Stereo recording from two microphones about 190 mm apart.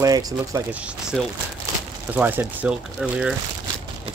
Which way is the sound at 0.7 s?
5° right (ahead or behind).